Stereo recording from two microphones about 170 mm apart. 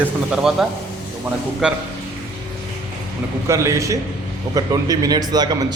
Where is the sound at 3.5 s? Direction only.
15° right (ahead or behind).